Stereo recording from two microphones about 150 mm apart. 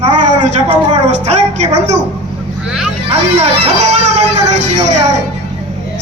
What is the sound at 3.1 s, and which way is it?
Speech, 45° right (ahead or behind).